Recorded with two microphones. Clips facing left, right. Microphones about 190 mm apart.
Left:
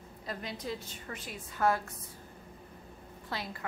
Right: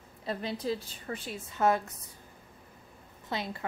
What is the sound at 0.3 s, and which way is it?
A woman's voice, 30° right (ahead or behind).